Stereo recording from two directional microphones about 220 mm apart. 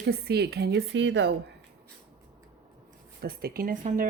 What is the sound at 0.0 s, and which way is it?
Speech, 45° right (ahead or behind).